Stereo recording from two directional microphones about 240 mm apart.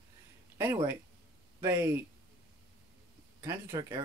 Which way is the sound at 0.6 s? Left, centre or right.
Centre.